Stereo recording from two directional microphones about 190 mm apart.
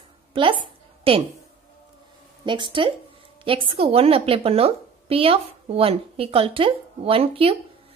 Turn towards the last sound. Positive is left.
turn(degrees=-30)  # may be behind; listen again after turning